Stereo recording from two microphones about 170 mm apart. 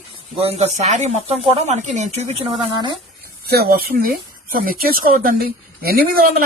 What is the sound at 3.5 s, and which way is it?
Speech, 65° right (ahead or behind).